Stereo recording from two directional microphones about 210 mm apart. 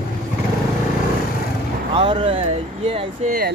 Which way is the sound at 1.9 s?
25° right (ahead or behind).